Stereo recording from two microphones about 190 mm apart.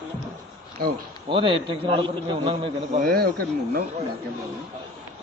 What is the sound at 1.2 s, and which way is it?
A man's voice, 25° right (ahead or behind).